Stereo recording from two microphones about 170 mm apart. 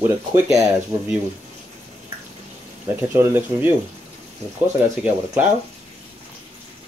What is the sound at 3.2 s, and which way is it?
Speech, 10° right (ahead or behind).